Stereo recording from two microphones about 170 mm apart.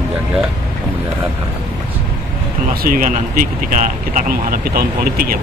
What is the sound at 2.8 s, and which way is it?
Speech, 55° right (ahead or behind).